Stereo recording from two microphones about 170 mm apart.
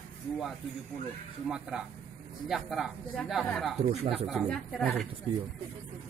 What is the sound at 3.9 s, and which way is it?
Speech, 35° right (ahead or behind).